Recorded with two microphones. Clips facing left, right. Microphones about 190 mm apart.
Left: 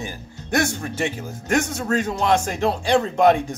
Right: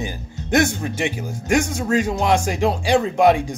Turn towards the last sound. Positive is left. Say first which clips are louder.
# right 1 dB
turn(degrees=-10)  # may be behind; listen again after turning